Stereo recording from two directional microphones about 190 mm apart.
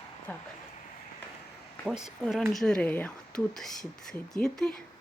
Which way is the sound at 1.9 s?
Centre (ahead or behind).